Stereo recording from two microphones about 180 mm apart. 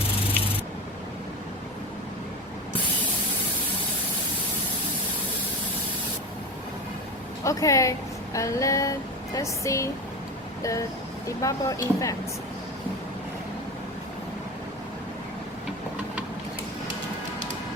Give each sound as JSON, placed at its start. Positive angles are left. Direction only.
{"t": 7.4, "sound": "speech", "side_deg": 20}
{"t": 10.6, "sound": "a sound", "side_deg": 20}
{"t": 11.3, "sound": "speech", "side_deg": 20}